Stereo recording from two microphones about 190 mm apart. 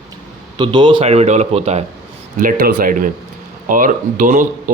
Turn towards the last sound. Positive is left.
turn(degrees=-45)  # may be behind; listen again after turning